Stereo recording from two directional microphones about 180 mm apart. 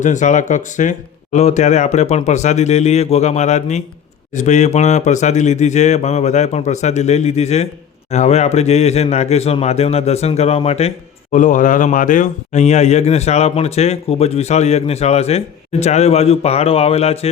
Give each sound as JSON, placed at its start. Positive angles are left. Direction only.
{"t": 0.0, "sound": "speech", "side_deg": 45}